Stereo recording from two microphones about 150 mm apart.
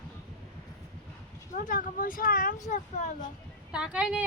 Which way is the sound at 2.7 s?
55° left (ahead or behind).